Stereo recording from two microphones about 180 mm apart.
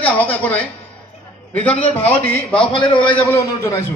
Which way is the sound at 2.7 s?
25° left (ahead or behind).